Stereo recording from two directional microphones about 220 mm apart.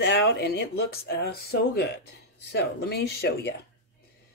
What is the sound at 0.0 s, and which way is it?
Speech, 55° left (ahead or behind).